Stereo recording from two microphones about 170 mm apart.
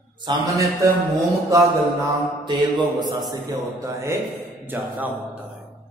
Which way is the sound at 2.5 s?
25° right (ahead or behind).